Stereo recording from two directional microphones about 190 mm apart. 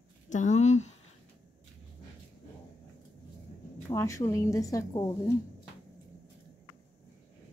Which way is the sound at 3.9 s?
15° left (ahead or behind).